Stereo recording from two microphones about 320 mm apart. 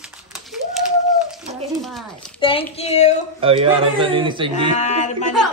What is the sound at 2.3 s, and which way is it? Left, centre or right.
Speech, centre.